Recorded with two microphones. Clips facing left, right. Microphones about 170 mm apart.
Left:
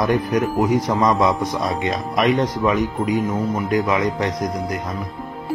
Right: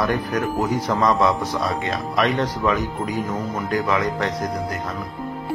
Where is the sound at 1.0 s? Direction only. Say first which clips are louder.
Left 1 dB; 15° left (ahead or behind).